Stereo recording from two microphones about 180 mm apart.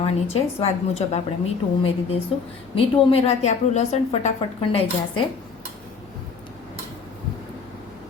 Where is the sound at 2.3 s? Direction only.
30° left (ahead or behind).